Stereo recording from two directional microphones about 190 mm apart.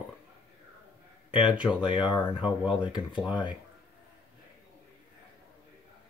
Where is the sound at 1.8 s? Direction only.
25° left (ahead or behind).